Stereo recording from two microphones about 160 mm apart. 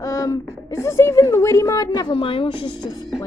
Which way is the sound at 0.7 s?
15° left (ahead or behind).